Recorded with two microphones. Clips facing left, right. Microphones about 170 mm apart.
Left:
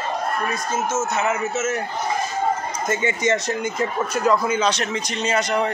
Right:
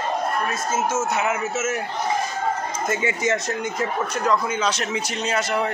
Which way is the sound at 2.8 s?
5° right (ahead or behind).